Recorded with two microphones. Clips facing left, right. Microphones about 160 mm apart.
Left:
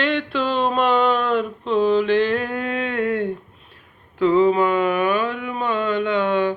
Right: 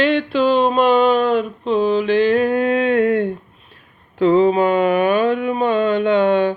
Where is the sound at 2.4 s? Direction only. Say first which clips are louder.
Right 8 dB; 20° right (ahead or behind).